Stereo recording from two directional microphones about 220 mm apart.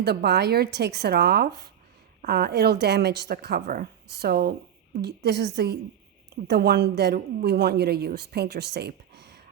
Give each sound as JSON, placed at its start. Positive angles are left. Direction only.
{"t": 0.0, "sound": "a woman's voice", "side_deg": -50}